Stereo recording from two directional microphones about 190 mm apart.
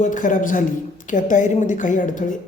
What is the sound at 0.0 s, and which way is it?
A woman's voice, 40° left (ahead or behind).